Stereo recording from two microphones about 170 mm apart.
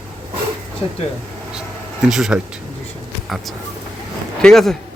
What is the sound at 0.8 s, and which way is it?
Speech, 30° left (ahead or behind).